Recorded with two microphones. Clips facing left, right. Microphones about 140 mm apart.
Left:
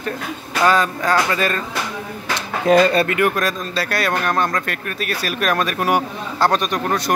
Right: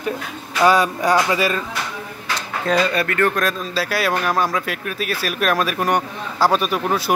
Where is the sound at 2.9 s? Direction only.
30° left (ahead or behind).